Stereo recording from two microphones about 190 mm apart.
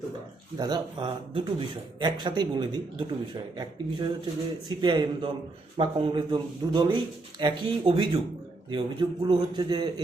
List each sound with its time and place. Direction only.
0.5 s speech: 20° right (ahead or behind)